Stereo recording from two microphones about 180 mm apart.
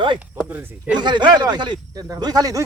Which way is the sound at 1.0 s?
25° right (ahead or behind).